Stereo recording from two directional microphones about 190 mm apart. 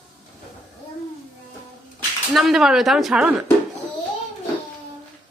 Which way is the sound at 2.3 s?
Centre (ahead or behind).